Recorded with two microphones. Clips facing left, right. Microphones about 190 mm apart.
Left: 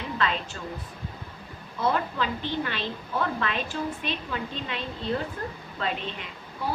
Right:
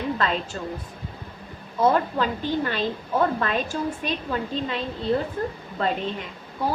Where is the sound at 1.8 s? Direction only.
45° right (ahead or behind).